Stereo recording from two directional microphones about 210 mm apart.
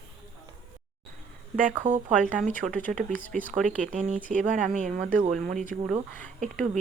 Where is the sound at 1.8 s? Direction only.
35° right (ahead or behind).